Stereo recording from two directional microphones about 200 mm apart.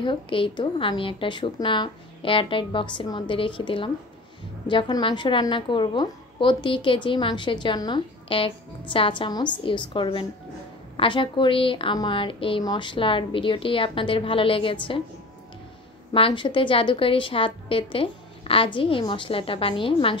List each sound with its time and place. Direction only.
0.0 s a woman's voice: 25° left (ahead or behind)
16.1 s a woman's voice: 25° left (ahead or behind)